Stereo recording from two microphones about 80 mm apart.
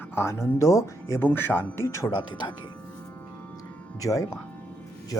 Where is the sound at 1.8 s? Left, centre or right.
Left.